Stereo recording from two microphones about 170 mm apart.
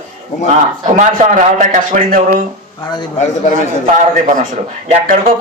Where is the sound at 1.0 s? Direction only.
50° right (ahead or behind).